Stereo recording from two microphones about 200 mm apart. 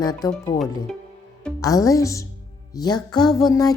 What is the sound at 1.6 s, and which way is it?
Speech, 15° left (ahead or behind).